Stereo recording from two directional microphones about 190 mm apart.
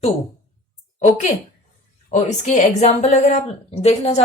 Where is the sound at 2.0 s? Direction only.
35° left (ahead or behind).